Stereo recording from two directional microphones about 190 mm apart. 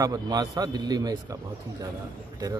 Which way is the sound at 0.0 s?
20° right (ahead or behind).